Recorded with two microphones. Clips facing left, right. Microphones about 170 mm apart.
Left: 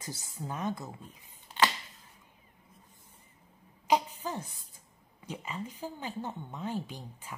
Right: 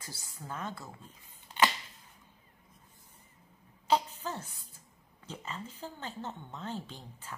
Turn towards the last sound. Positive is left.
turn(degrees=10)  # may be behind; listen again after turning